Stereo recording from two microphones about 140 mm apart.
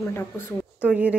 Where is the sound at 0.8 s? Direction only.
10° right (ahead or behind).